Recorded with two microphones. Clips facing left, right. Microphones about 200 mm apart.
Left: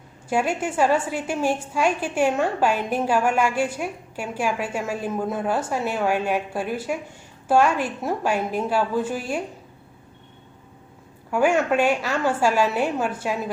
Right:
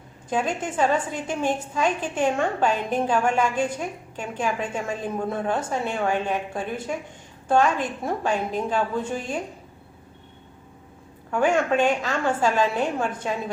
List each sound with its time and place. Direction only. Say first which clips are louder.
0.3 s a woman's voice: left 2 dB; 10° left (ahead or behind)
11.3 s a woman's voice: left 1 dB; 10° left (ahead or behind)